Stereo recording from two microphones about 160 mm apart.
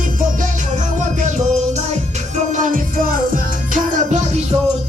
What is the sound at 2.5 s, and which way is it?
Music, 50° right (ahead or behind).